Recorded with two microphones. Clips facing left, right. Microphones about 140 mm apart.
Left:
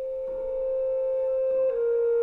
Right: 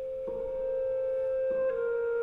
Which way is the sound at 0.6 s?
30° left (ahead or behind).